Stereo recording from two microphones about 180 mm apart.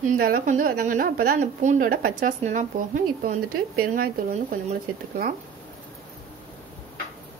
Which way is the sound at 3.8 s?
50° right (ahead or behind).